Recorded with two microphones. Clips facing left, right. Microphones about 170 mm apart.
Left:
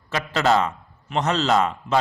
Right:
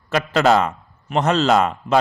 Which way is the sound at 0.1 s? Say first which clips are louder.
Right 4 dB; 55° right (ahead or behind).